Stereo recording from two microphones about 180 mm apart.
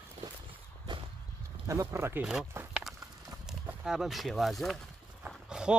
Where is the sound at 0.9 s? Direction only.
25° right (ahead or behind).